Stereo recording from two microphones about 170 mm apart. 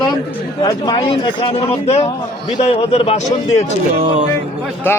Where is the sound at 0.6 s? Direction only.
25° left (ahead or behind).